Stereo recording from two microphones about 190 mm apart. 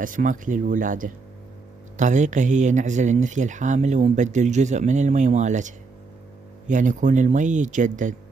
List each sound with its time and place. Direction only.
0.0 s speech: 45° right (ahead or behind)